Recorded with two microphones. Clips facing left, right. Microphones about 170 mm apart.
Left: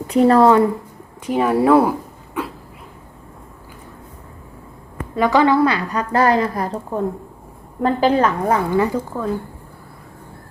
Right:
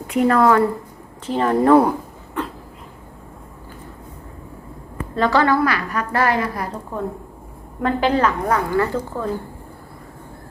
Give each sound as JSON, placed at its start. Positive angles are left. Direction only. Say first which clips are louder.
{"t": 0.1, "sound": "a woman's voice", "louder": "left 3 dB", "side_deg": 35}
{"t": 1.3, "sound": "speech", "louder": "even", "side_deg": 10}
{"t": 2.4, "sound": "a sound", "louder": "even", "side_deg": 10}
{"t": 5.1, "sound": "a woman's voice", "louder": "left 2 dB", "side_deg": 15}
{"t": 8.7, "sound": "speech", "louder": "left 2 dB", "side_deg": 15}